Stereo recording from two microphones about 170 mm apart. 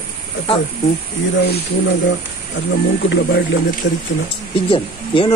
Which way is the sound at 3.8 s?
90° left.